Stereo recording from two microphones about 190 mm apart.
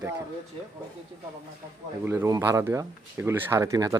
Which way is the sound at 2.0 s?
15° right (ahead or behind).